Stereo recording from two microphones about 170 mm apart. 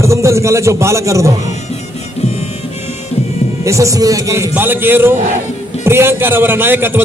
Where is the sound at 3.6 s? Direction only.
20° right (ahead or behind).